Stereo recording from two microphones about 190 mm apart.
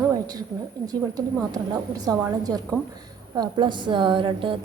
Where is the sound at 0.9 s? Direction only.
20° right (ahead or behind).